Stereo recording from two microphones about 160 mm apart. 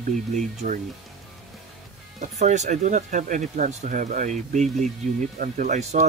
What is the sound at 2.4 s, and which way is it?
Speech, 45° right (ahead or behind).